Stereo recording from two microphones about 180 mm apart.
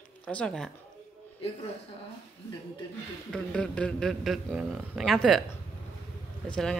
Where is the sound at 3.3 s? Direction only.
5° left (ahead or behind).